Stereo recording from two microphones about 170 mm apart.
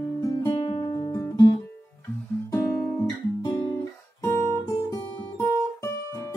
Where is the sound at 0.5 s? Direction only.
30° left (ahead or behind).